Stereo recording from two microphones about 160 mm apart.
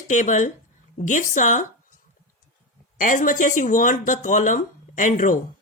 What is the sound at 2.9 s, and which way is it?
Speech, 55° left (ahead or behind).